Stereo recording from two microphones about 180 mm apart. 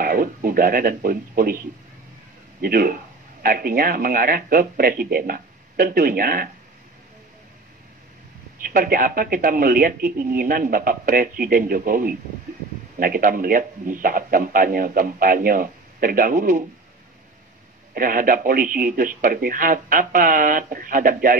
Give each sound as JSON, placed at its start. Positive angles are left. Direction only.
{"t": 0.0, "sound": "speech", "side_deg": -50}
{"t": 2.6, "sound": "speech", "side_deg": -50}
{"t": 8.6, "sound": "speech", "side_deg": -50}
{"t": 17.9, "sound": "speech", "side_deg": -50}